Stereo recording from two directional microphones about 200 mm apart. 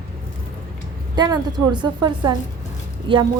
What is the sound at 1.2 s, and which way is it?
A woman's voice, 20° right (ahead or behind).